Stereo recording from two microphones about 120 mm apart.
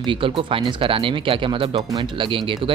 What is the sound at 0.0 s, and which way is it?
Speech, 45° right (ahead or behind).